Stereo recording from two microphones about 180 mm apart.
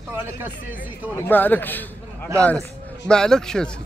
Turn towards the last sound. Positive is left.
turn(degrees=5)  # may be behind; listen again after turning